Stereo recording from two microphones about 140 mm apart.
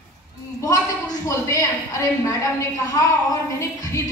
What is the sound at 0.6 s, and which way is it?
A woman's voice, 25° left (ahead or behind).